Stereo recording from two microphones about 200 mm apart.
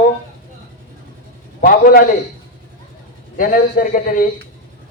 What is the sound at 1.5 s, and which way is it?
Speech, 45° left (ahead or behind).